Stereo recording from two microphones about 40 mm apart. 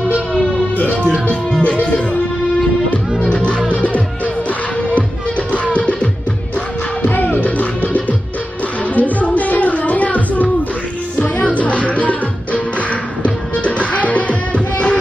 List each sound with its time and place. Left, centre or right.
1.6 s music: left
3.4 s music: left
5.5 s music: left
7.0 s music: left
7.4 s music: left